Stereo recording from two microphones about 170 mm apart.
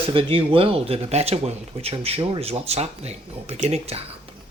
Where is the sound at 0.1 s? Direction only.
30° right (ahead or behind).